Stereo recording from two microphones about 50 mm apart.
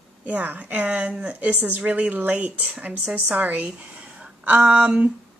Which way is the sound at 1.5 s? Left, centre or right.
Right.